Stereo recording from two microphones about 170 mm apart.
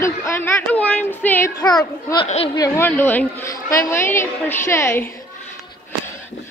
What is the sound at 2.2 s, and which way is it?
Speech, 40° left (ahead or behind).